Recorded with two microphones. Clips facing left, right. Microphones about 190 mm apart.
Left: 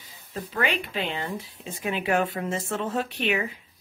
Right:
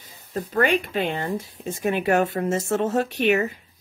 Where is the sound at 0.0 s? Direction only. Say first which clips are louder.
Right 6 dB; 40° right (ahead or behind).